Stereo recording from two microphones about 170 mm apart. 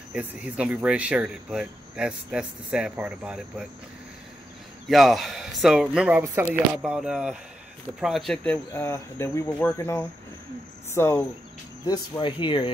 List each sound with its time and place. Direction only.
0.1 s speech: 5° right (ahead or behind)
4.8 s speech: centre (ahead or behind)
8.7 s cricket: 15° left (ahead or behind)
11.8 s speech: 25° left (ahead or behind)